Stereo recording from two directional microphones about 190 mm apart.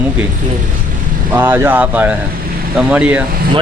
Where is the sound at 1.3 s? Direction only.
10° right (ahead or behind).